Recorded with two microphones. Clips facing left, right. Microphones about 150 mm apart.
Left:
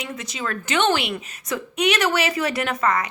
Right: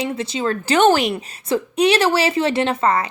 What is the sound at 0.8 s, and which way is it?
A woman's voice, 40° right (ahead or behind).